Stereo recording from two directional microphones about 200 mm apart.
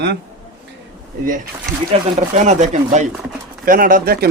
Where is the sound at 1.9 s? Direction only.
35° right (ahead or behind).